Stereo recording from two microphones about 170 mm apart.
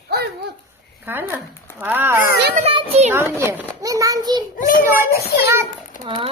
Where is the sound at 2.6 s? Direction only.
35° right (ahead or behind).